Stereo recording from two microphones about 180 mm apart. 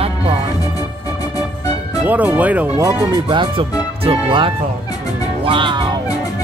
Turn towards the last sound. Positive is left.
turn(degrees=-25)  # may be behind; listen again after turning